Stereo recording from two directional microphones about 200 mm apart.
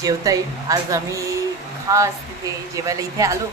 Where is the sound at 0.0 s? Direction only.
15° right (ahead or behind).